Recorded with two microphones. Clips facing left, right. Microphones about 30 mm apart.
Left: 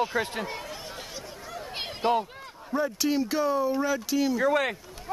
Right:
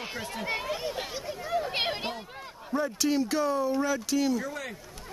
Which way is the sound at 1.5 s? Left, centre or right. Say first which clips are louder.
Right 8 dB; right.